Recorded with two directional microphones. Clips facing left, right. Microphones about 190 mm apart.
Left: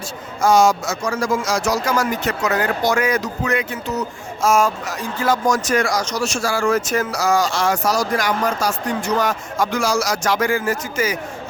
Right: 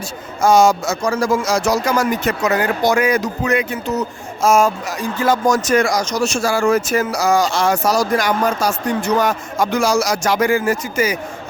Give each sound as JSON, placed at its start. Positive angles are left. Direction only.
{"t": 0.4, "sound": "speech", "side_deg": -25}
{"t": 2.2, "sound": "speech", "side_deg": -15}